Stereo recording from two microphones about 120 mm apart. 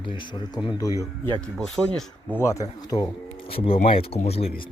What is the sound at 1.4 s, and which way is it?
Speech, 5° left (ahead or behind).